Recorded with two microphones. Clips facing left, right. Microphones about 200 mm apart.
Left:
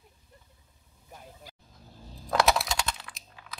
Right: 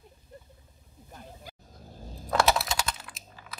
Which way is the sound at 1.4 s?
45° right (ahead or behind).